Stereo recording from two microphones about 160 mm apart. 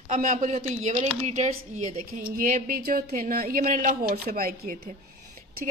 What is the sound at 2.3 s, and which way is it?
A woman's voice, 65° right (ahead or behind).